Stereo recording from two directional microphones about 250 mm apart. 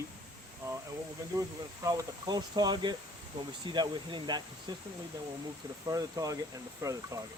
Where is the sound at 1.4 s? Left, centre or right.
Centre.